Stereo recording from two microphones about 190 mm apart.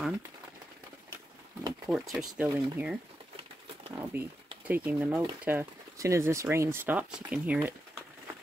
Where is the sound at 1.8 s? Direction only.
5° right (ahead or behind).